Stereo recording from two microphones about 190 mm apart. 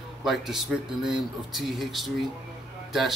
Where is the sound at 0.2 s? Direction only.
Centre (ahead or behind).